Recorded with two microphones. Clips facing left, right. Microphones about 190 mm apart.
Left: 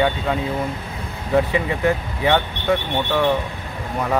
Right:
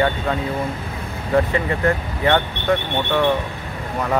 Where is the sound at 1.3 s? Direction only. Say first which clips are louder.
Even; 5° left (ahead or behind).